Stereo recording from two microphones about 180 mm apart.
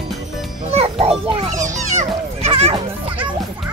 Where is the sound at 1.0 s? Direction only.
30° right (ahead or behind).